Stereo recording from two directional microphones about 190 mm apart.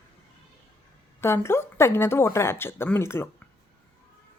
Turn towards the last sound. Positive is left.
turn(degrees=15)  # may be behind; listen again after turning